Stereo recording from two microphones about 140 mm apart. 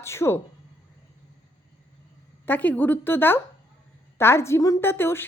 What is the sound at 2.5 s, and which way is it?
A woman's voice, 10° left (ahead or behind).